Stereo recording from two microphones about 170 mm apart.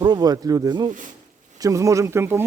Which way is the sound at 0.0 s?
25° right (ahead or behind).